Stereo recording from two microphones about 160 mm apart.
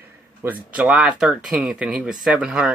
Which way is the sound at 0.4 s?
10° right (ahead or behind).